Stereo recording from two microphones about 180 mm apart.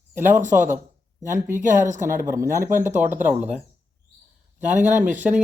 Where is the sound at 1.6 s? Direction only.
45° right (ahead or behind).